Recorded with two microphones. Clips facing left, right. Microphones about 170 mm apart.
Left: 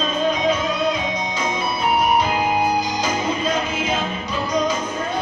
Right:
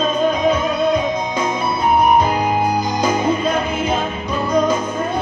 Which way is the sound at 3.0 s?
55° right (ahead or behind).